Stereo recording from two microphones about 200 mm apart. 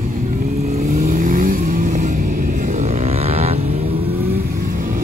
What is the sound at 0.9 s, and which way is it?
Vehicle, 45° right (ahead or behind).